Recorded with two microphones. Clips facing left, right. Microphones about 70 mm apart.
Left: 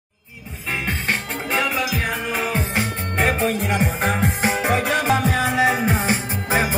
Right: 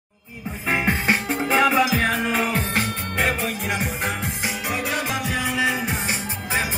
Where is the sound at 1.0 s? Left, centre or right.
Centre.